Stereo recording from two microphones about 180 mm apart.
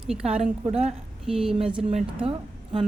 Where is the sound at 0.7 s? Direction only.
35° right (ahead or behind).